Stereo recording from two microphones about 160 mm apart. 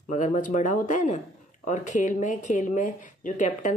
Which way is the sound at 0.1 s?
55° left (ahead or behind).